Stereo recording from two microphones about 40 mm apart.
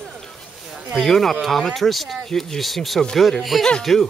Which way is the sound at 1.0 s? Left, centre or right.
Centre.